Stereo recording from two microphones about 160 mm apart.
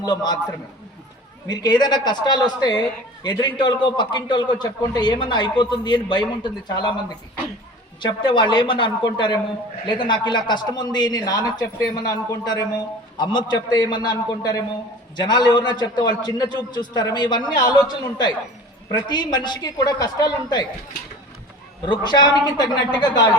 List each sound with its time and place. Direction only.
0.0 s a man's voice: 25° left (ahead or behind)
1.5 s a man's voice: 25° left (ahead or behind)
21.8 s a man's voice: 30° left (ahead or behind)